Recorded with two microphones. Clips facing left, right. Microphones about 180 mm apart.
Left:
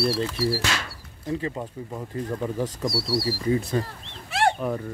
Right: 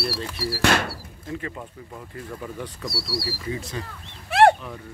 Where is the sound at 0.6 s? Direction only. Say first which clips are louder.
Right 8 dB; 60° right (ahead or behind).